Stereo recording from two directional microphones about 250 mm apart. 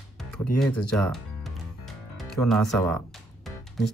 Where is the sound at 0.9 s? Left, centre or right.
Centre.